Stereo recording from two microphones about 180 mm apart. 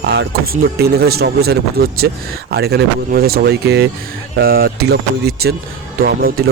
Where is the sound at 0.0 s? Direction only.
65° right (ahead or behind).